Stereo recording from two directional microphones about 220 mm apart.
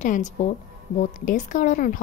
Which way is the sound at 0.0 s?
35° left (ahead or behind).